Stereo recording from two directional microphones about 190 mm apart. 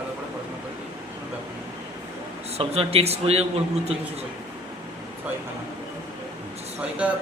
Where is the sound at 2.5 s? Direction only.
30° right (ahead or behind).